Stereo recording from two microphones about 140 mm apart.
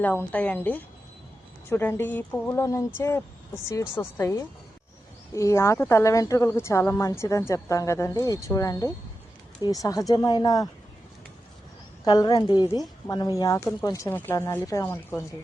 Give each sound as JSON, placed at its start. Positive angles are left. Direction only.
{"t": 0.0, "sound": "a woman's voice", "side_deg": 10}
{"t": 12.0, "sound": "a woman's voice", "side_deg": 30}